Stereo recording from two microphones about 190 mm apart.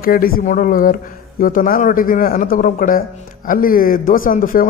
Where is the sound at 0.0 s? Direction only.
50° left (ahead or behind).